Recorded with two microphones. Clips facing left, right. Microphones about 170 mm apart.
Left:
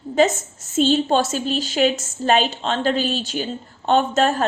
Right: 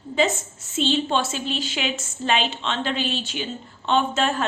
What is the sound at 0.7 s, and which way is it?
A woman's voice, 45° left (ahead or behind).